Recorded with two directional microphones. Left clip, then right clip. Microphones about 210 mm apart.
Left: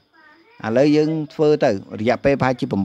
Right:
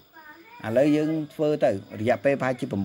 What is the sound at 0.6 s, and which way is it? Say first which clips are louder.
Speech: left 6 dB; 45° left (ahead or behind).